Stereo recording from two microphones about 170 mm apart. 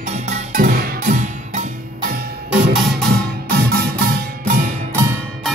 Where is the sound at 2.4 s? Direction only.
5° right (ahead or behind).